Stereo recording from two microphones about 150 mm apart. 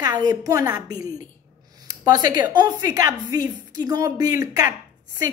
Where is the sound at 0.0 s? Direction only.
25° right (ahead or behind).